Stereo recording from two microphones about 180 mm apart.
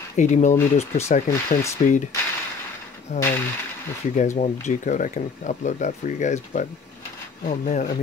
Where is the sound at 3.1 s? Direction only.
40° left (ahead or behind).